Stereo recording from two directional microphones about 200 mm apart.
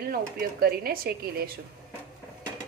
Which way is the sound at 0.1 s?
50° right (ahead or behind).